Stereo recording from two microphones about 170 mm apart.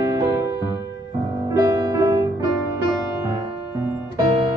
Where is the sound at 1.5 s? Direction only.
20° right (ahead or behind).